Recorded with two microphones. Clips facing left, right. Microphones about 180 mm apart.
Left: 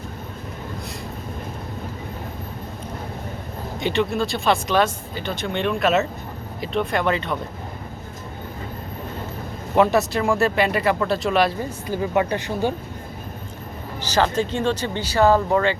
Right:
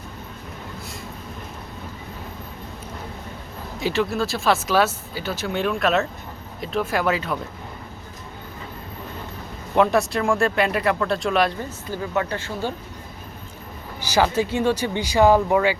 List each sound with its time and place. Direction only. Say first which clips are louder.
3.8 s speech: left 1 dB; centre (ahead or behind)
9.7 s speech: left 1 dB; centre (ahead or behind)
11.9 s speech: left 4 dB; 15° left (ahead or behind)
14.0 s speech: even; 10° right (ahead or behind)